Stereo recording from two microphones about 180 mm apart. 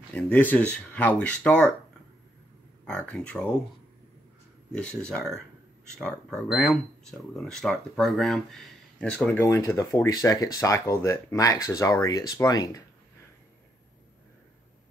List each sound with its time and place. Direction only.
0.1 s speech: 10° left (ahead or behind)
3.1 s speech: 5° left (ahead or behind)
4.7 s speech: 5° left (ahead or behind)